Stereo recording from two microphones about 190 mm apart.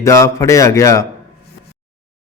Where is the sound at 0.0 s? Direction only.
15° left (ahead or behind).